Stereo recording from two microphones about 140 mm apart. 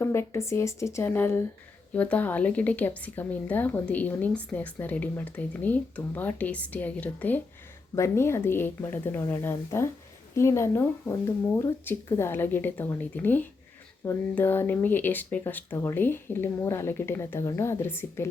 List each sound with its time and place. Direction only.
0.0 s a woman's voice: 20° left (ahead or behind)